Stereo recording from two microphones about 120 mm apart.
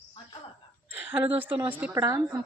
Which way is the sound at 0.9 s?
15° right (ahead or behind).